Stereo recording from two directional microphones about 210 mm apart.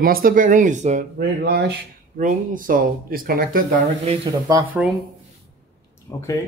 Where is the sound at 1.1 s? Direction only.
45° right (ahead or behind).